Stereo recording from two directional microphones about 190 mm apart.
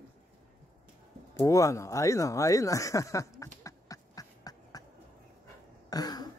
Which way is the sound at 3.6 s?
20° left (ahead or behind).